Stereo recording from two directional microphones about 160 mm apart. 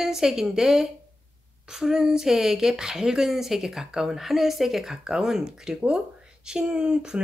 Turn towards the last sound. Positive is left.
turn(degrees=-5)  # may be behind; listen again after turning